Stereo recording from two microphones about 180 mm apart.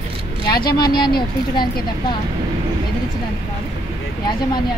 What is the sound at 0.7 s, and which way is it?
Speech, 25° left (ahead or behind).